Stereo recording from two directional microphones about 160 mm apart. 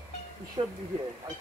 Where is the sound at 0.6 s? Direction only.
40° right (ahead or behind).